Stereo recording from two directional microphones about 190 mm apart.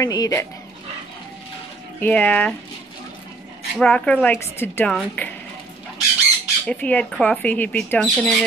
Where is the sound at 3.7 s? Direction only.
5° left (ahead or behind).